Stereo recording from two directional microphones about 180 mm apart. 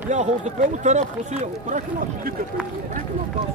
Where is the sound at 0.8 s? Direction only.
40° right (ahead or behind).